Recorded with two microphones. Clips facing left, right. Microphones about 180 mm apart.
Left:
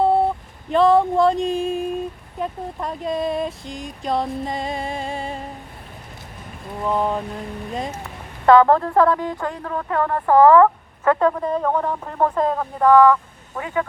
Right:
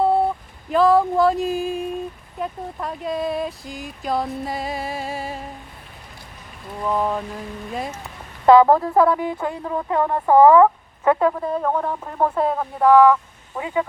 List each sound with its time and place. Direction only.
0.0 s a sound: centre (ahead or behind)
2.4 s speech: centre (ahead or behind)
6.8 s speech: centre (ahead or behind)
8.5 s speech: 10° right (ahead or behind)